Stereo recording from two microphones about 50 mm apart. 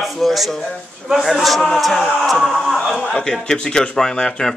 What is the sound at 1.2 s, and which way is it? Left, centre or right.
A man's voice, centre.